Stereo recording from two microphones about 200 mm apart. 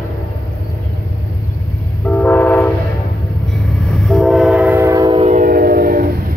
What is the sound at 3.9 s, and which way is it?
Train, centre (ahead or behind).